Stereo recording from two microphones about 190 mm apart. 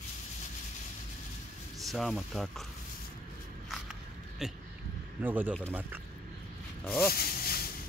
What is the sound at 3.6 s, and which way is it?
Biting, centre (ahead or behind).